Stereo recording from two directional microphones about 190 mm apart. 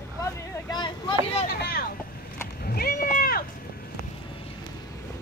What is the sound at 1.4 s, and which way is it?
Vehicle, 50° left (ahead or behind).